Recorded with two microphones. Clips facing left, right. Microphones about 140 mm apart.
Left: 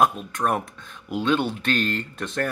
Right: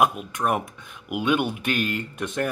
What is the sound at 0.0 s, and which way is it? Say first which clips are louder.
Speech: left 1 dB; 15° right (ahead or behind).